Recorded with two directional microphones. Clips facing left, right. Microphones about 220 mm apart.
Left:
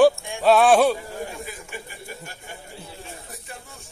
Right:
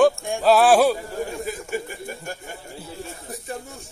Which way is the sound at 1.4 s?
45° right (ahead or behind).